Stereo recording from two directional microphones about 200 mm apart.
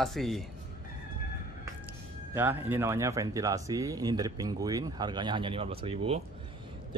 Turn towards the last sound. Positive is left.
turn(degrees=-30)  # may be behind; listen again after turning